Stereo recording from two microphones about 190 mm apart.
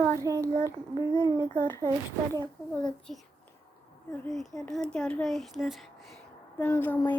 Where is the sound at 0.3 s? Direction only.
15° right (ahead or behind).